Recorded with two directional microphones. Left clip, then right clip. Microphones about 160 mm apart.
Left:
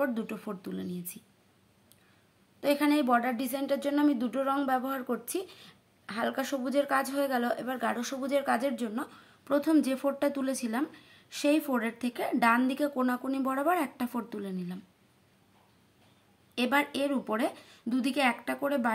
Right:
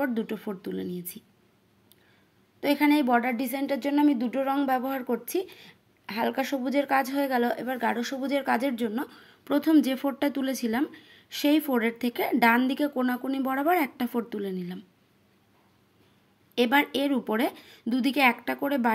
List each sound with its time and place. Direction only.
0.0 s a woman's voice: 20° right (ahead or behind)
2.6 s a woman's voice: 20° right (ahead or behind)
16.5 s a woman's voice: 25° right (ahead or behind)